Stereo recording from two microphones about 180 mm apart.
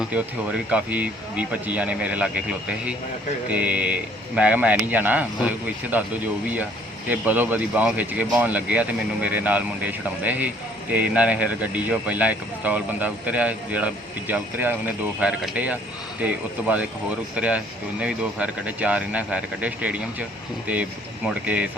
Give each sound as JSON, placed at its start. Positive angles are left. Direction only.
{"t": 0.0, "sound": "speech", "side_deg": -10}
{"t": 7.1, "sound": "speech", "side_deg": -10}
{"t": 21.2, "sound": "speech", "side_deg": -5}